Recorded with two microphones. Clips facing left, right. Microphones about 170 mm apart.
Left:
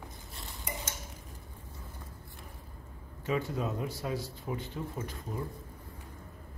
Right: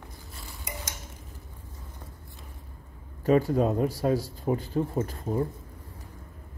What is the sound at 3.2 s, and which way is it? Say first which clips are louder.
Speech: right 10 dB; 40° right (ahead or behind).